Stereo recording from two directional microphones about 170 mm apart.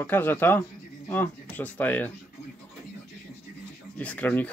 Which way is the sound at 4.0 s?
10° left (ahead or behind).